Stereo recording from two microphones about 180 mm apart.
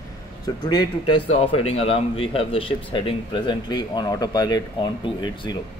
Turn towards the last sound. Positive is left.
turn(degrees=25)  # may be behind; listen again after turning